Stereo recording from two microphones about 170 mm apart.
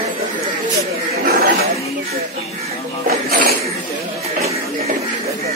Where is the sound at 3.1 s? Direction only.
60° right (ahead or behind).